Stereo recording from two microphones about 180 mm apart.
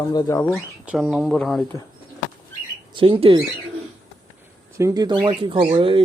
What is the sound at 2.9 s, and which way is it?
Speech, 30° right (ahead or behind).